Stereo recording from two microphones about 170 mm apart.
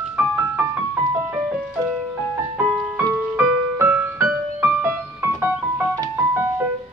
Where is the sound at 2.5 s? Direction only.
5° right (ahead or behind).